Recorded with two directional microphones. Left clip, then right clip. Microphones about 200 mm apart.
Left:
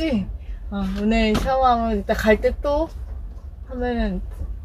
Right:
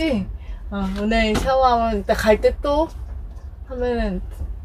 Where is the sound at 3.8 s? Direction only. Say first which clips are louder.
Right 2 dB; 20° right (ahead or behind).